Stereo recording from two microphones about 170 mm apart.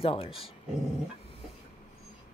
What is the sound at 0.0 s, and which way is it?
Speech, 35° left (ahead or behind).